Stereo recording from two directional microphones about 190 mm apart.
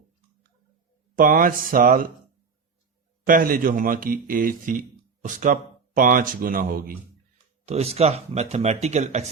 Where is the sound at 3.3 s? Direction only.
45° right (ahead or behind).